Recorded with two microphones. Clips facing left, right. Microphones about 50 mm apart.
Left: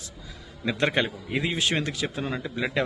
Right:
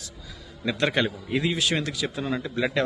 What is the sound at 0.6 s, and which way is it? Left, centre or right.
Speech, centre.